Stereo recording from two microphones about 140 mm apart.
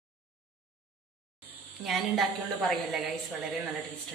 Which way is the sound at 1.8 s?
Centre (ahead or behind).